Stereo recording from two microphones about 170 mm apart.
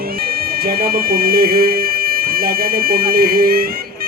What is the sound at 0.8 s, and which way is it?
Speech, 60° right (ahead or behind).